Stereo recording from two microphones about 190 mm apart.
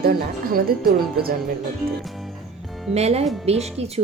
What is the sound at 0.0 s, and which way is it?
Speech, 50° right (ahead or behind).